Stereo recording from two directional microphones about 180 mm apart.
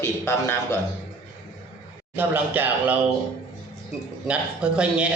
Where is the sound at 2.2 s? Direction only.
10° right (ahead or behind).